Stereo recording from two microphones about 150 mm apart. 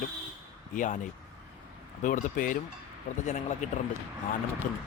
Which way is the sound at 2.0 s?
60° left (ahead or behind).